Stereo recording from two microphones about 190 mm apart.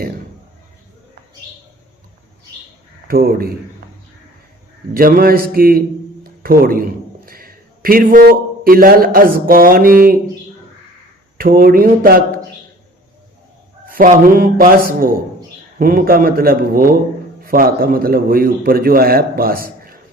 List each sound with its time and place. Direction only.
3.1 s a man's voice: 50° right (ahead or behind)
4.9 s a man's voice: 50° right (ahead or behind)
6.2 s a sound: 50° right (ahead or behind)
7.3 s a man's voice: 50° right (ahead or behind)
11.3 s a man's voice: 50° right (ahead or behind)
13.9 s a man's voice: 50° right (ahead or behind)